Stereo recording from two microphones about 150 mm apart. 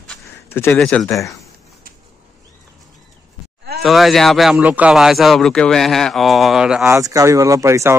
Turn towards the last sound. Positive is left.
turn(degrees=-20)  # may be behind; listen again after turning